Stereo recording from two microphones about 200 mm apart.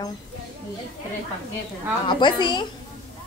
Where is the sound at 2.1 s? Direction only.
25° left (ahead or behind).